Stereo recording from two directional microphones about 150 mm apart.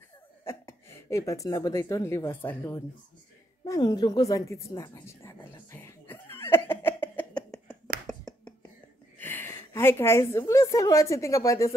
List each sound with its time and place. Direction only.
0.5 s speech: 20° left (ahead or behind)
3.6 s a sound: 25° left (ahead or behind)
9.2 s a woman's voice: 15° left (ahead or behind)